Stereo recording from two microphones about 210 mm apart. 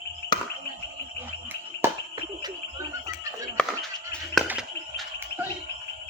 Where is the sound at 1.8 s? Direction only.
10° right (ahead or behind).